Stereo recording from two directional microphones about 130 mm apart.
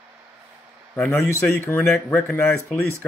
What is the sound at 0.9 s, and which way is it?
Speech, 15° left (ahead or behind).